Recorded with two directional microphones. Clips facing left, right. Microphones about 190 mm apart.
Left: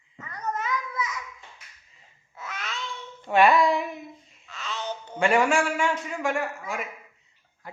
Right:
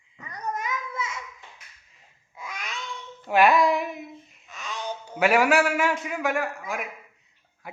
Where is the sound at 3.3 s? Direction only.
Centre (ahead or behind).